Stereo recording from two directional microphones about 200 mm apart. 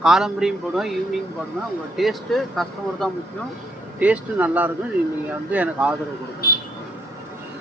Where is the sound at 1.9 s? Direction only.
Centre (ahead or behind).